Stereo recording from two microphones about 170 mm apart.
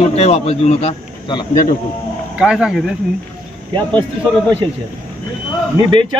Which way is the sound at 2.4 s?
5° right (ahead or behind).